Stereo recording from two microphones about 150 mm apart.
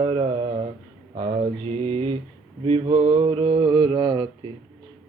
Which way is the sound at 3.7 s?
25° right (ahead or behind).